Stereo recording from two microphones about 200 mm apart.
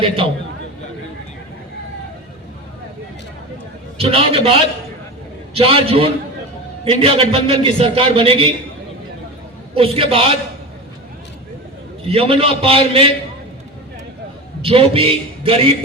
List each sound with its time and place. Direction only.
3.9 s a man's voice: 30° right (ahead or behind)
9.7 s a man's voice: 30° right (ahead or behind)
12.0 s a man's voice: 30° right (ahead or behind)
14.6 s a man's voice: 30° right (ahead or behind)